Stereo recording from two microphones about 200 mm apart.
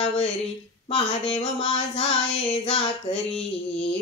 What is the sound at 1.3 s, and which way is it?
Speech, 30° left (ahead or behind).